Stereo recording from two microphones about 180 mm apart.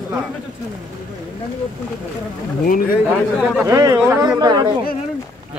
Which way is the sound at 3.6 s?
20° right (ahead or behind).